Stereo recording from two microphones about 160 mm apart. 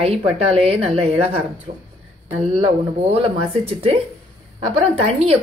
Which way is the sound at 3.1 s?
40° right (ahead or behind).